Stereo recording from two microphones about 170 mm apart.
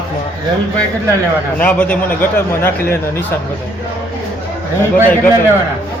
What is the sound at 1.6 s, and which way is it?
A man's voice, 10° left (ahead or behind).